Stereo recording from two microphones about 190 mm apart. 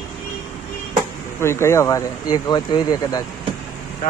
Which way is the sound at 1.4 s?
15° left (ahead or behind).